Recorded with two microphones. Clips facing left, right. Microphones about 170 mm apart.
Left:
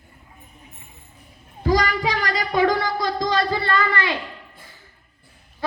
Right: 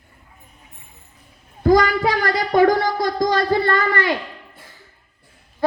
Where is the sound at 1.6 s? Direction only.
45° right (ahead or behind).